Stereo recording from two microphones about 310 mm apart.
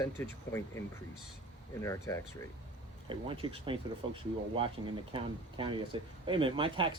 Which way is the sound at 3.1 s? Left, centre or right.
Centre.